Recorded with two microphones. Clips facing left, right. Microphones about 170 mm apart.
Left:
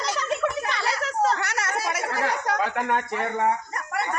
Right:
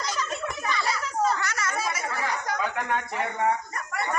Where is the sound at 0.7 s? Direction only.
70° left (ahead or behind).